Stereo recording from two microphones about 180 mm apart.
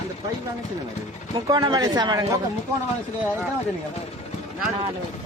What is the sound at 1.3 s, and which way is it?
Speech, 20° right (ahead or behind).